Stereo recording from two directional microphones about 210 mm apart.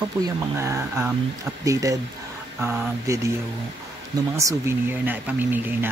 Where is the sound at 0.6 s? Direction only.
10° right (ahead or behind).